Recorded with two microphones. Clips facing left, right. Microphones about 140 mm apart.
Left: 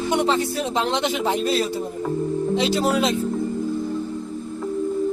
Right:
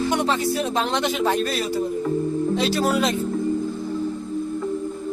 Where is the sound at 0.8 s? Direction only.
20° left (ahead or behind).